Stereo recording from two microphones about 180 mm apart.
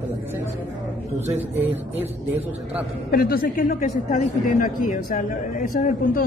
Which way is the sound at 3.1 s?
55° left (ahead or behind).